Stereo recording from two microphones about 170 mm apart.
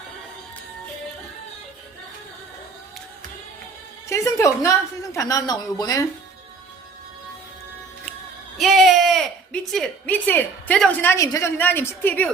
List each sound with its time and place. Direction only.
4.1 s music: 15° left (ahead or behind)
5.1 s a woman's voice: 20° left (ahead or behind)
8.5 s a woman's voice: centre (ahead or behind)